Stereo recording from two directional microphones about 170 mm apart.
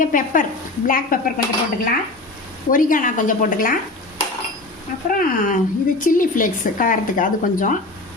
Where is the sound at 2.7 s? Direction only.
55° left (ahead or behind).